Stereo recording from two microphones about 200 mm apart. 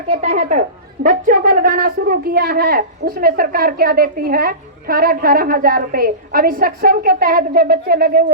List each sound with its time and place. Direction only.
0.1 s a woman's voice: 35° right (ahead or behind); by 8.2 s 50° right (ahead or behind)